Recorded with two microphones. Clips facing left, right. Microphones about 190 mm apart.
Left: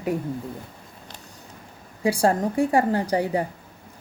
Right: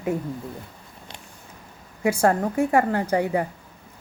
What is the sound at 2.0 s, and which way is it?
A woman's voice, 30° left (ahead or behind).